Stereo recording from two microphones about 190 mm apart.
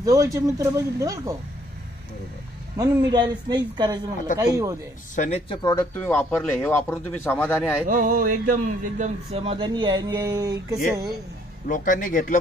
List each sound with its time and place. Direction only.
0.0 s speech: 15° right (ahead or behind)
3.1 s speech: 25° right (ahead or behind)
5.1 s speech: 35° left (ahead or behind)
5.6 s speech: 20° left (ahead or behind)
5.9 s speech: 10° left (ahead or behind)
7.9 s speech: 45° right (ahead or behind); by 10.8 s 20° right (ahead or behind)
11.6 s speech: 45° left (ahead or behind)